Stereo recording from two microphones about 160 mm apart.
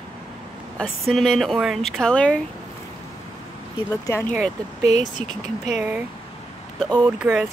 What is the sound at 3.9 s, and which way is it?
Speech, 15° left (ahead or behind).